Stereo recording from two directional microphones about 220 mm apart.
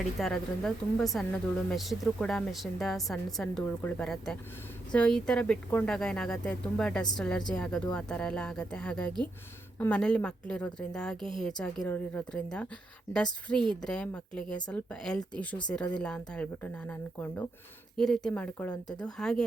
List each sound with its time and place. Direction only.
0.2 s a woman's voice: centre (ahead or behind)
18.7 s speech: 20° left (ahead or behind)
19.1 s a woman's voice: centre (ahead or behind)